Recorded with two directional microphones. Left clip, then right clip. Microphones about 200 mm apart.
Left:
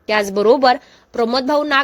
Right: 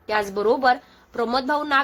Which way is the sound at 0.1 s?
35° left (ahead or behind).